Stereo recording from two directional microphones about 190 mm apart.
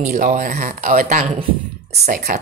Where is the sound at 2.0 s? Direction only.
55° right (ahead or behind).